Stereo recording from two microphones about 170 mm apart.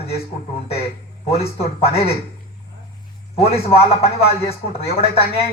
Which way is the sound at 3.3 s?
35° left (ahead or behind).